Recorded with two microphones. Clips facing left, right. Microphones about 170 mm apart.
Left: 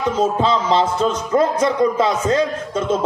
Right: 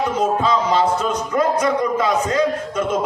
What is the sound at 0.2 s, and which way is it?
Speech, 30° left (ahead or behind).